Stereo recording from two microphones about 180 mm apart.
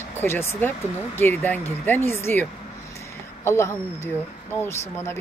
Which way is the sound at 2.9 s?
15° left (ahead or behind).